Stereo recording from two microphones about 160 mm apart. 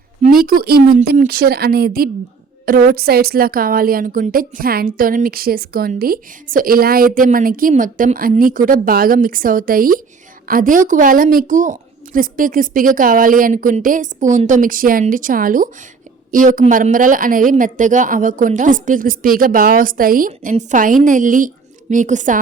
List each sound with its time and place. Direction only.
0.3 s a woman's voice: 65° right (ahead or behind)
2.6 s a woman's voice: 60° right (ahead or behind)